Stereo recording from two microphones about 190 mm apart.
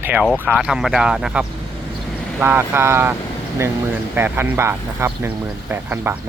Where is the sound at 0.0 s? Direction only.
10° right (ahead or behind).